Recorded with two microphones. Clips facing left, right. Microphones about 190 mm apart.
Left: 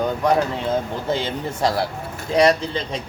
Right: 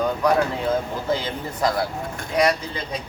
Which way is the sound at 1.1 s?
25° left (ahead or behind).